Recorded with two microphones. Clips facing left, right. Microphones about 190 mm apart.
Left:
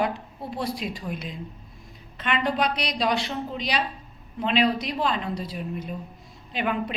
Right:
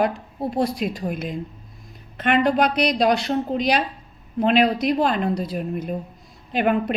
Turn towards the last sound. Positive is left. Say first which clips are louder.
# right 7 dB
turn(degrees=-50)  # may be behind; listen again after turning